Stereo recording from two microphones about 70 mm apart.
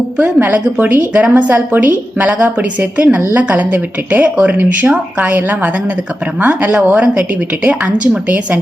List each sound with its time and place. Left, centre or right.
0.2 s a woman's voice: right